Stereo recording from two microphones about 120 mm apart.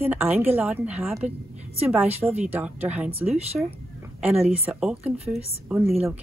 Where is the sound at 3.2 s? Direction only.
60° right (ahead or behind).